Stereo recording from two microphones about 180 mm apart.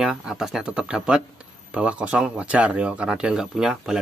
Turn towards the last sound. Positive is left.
turn(degrees=0)  # may be behind; listen again after turning